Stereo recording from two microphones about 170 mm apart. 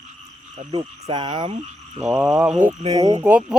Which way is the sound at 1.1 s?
25° right (ahead or behind).